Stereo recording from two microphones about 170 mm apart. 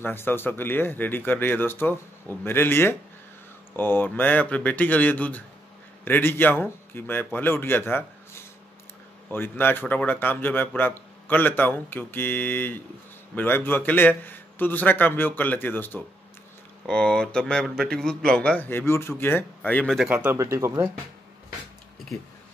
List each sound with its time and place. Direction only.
0.0 s a man's voice: 15° left (ahead or behind)
20.1 s speech: 10° right (ahead or behind)